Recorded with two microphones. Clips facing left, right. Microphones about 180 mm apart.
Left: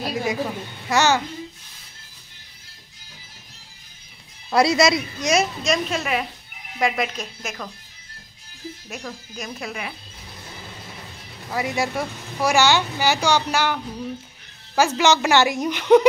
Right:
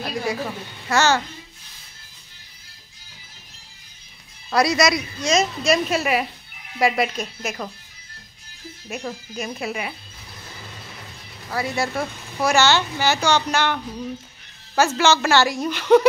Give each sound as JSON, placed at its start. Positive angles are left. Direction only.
{"t": 0.0, "sound": "a woman's voice", "side_deg": 15}
{"t": 4.5, "sound": "speech", "side_deg": 25}
{"t": 5.7, "sound": "a woman's voice", "side_deg": -5}
{"t": 8.8, "sound": "speech", "side_deg": -5}
{"t": 11.5, "sound": "speech", "side_deg": 15}
{"t": 14.8, "sound": "speech", "side_deg": 15}